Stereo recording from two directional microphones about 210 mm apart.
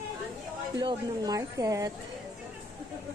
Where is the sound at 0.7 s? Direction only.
20° right (ahead or behind).